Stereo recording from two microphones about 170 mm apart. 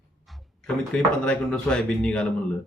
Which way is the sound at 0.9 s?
5° left (ahead or behind).